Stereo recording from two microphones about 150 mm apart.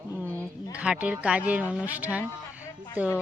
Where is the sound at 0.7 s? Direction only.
5° right (ahead or behind).